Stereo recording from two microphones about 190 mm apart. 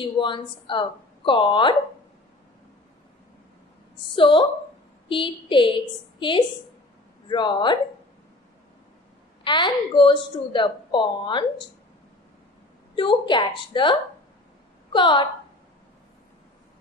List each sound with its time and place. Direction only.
0.0 s a woman's voice: 25° left (ahead or behind)
4.1 s a woman's voice: 25° left (ahead or behind)
9.4 s a woman's voice: 25° left (ahead or behind)
12.9 s a woman's voice: 25° left (ahead or behind)